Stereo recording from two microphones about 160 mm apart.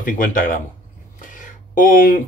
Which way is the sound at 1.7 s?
60° left (ahead or behind).